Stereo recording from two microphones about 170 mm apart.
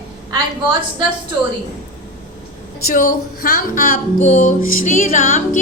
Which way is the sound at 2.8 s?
55° left (ahead or behind).